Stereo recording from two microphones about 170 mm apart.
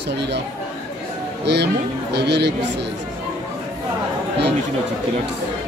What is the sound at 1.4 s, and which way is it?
Speech, 80° right.